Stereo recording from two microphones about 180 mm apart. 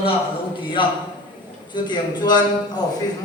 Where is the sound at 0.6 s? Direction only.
30° left (ahead or behind).